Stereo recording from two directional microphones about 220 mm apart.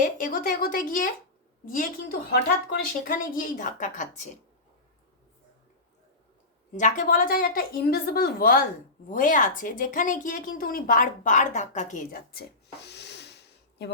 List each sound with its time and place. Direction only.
0.0 s speech: 40° left (ahead or behind)
6.7 s speech: 35° left (ahead or behind)
12.9 s snort: 50° left (ahead or behind)